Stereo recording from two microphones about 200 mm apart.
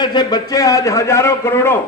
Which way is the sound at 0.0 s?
20° left (ahead or behind).